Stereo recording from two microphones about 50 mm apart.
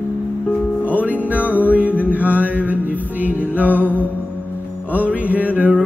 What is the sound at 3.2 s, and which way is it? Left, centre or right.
Music, right.